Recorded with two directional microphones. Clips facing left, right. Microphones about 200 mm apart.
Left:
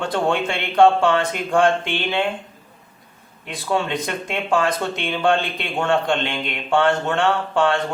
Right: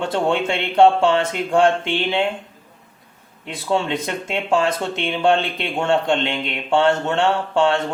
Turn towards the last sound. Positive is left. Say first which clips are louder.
# right 1 dB
turn(degrees=-25)  # may be behind; listen again after turning